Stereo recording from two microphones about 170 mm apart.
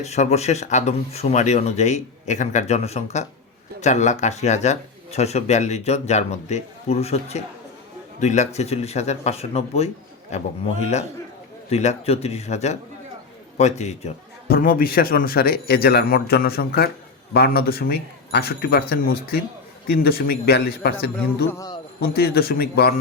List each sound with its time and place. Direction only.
0.0 s speech: 40° left (ahead or behind)
14.4 s speech: 60° left (ahead or behind)